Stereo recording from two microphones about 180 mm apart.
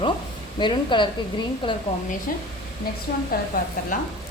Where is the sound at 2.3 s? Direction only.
50° left (ahead or behind).